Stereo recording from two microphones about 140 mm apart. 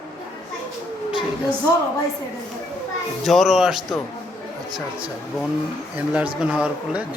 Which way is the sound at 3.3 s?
Centre (ahead or behind).